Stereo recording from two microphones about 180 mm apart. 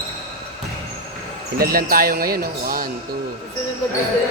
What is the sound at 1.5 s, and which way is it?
Speech, 55° right (ahead or behind).